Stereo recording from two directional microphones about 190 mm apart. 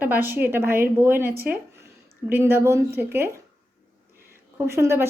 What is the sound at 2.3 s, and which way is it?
A woman's voice, 10° right (ahead or behind).